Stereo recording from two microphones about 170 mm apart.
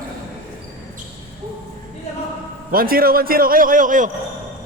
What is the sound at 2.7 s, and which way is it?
A man's voice, 60° right (ahead or behind).